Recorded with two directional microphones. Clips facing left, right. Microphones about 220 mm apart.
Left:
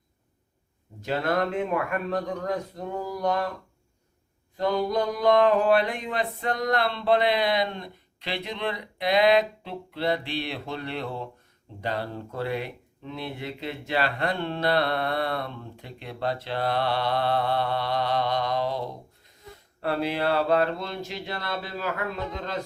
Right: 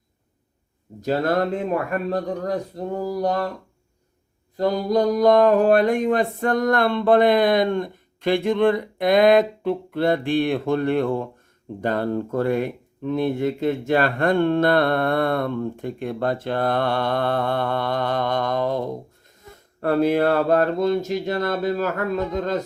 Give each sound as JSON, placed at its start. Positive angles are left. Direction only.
{"t": 1.0, "sound": "speech", "side_deg": -40}
{"t": 4.5, "sound": "speech", "side_deg": -40}